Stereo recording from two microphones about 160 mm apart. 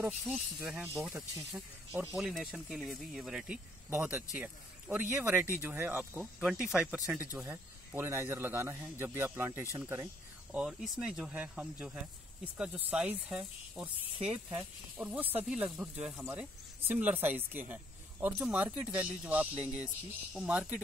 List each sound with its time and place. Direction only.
0.3 s speech: 5° right (ahead or behind)